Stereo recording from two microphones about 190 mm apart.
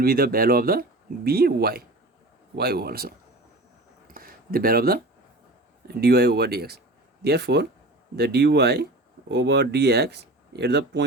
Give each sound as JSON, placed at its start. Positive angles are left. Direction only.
{"t": 0.0, "sound": "speech", "side_deg": -50}
{"t": 4.0, "sound": "a sound", "side_deg": -50}
{"t": 5.9, "sound": "speech", "side_deg": -55}